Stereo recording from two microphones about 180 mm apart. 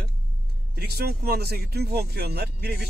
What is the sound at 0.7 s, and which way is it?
Speech, 60° right (ahead or behind).